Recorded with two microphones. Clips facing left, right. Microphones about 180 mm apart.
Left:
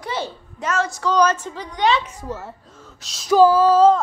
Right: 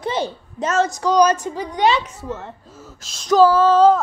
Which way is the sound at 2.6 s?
5° right (ahead or behind).